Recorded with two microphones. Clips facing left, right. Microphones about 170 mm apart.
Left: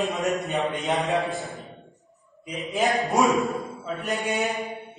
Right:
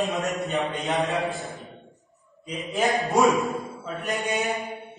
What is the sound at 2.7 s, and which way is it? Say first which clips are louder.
A man's voice: even; centre (ahead or behind).